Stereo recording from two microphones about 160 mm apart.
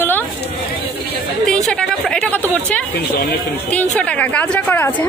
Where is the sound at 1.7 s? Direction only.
5° left (ahead or behind).